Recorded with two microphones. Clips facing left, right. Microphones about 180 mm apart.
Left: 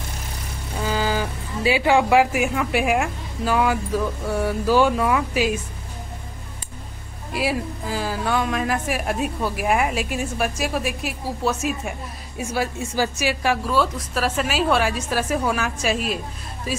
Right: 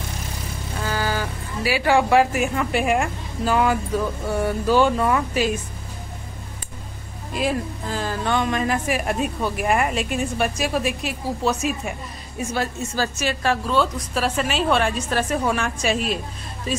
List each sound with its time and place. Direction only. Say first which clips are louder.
0.8 s speech: left 2 dB; 15° left (ahead or behind)
7.3 s speech: even; 10° left (ahead or behind)